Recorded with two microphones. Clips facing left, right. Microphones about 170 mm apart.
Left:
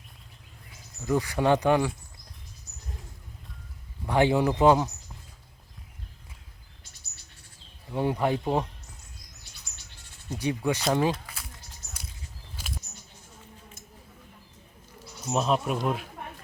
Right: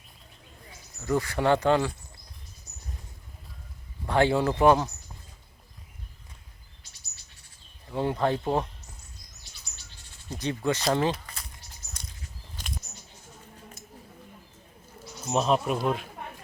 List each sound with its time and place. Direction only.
1.0 s speech: 15° left (ahead or behind)
4.0 s speech: 15° left (ahead or behind)
7.9 s speech: 15° left (ahead or behind)
10.2 s speech: 10° left (ahead or behind)
10.9 s a sound: 10° left (ahead or behind)
12.6 s a sound: 10° left (ahead or behind)
15.2 s speech: centre (ahead or behind)